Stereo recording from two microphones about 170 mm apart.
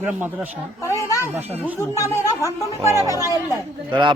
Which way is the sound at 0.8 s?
15° left (ahead or behind).